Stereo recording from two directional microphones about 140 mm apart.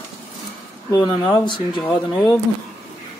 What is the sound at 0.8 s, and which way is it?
Speech, 25° left (ahead or behind).